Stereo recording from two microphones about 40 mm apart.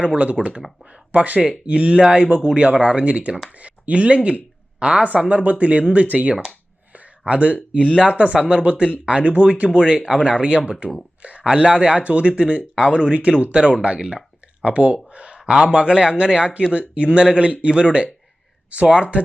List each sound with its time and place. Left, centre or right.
0.1 s speech: right
1.1 s a woman's voice: right
11.2 s a sound: right
11.4 s speech: right
15.1 s a sound: right
15.5 s speech: right